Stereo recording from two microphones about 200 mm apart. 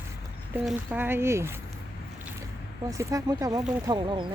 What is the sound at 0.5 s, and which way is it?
Speech, 10° right (ahead or behind).